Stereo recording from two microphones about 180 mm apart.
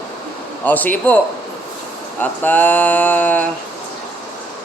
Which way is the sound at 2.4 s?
10° left (ahead or behind).